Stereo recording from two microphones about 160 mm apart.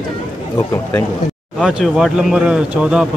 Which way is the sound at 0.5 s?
15° left (ahead or behind).